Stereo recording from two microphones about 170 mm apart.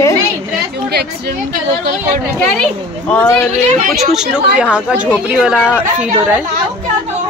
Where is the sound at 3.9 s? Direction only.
Centre (ahead or behind).